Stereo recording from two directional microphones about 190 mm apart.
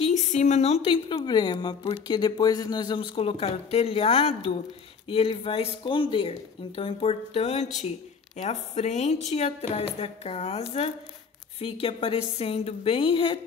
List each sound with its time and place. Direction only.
0.0 s a woman's voice: 40° left (ahead or behind)